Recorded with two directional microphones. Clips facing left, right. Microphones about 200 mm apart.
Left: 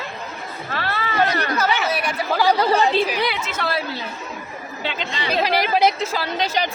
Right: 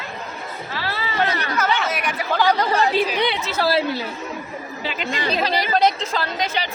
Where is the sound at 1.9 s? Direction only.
30° left (ahead or behind).